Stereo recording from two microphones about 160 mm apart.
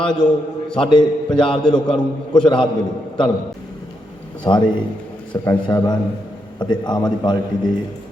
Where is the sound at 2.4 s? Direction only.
30° left (ahead or behind).